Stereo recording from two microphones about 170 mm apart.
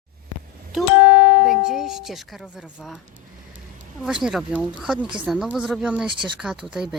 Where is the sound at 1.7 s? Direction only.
Centre (ahead or behind).